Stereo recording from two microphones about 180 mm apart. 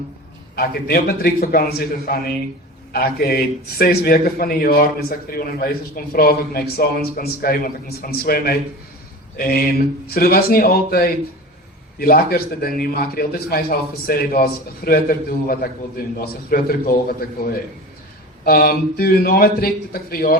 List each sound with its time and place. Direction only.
0.5 s a man's voice: 55° left (ahead or behind)